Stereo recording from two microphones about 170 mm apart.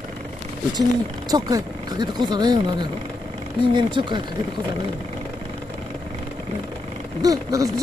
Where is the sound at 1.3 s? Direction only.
25° right (ahead or behind).